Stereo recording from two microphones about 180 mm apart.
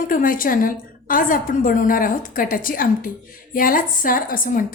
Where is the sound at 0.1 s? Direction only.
50° left (ahead or behind).